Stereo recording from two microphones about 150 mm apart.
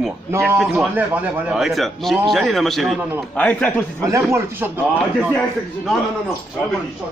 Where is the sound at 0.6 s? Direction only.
5° right (ahead or behind); by 4.0 s 10° left (ahead or behind).